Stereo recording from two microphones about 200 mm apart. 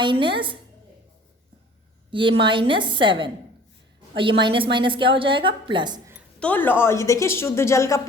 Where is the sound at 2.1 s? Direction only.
25° right (ahead or behind).